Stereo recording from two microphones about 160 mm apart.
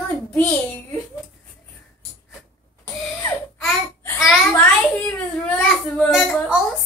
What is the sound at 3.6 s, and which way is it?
Babbling, centre (ahead or behind).